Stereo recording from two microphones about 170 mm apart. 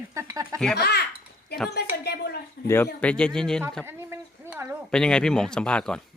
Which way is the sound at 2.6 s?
15° left (ahead or behind).